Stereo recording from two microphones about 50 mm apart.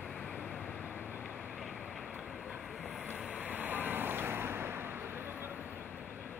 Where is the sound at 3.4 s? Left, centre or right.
Right.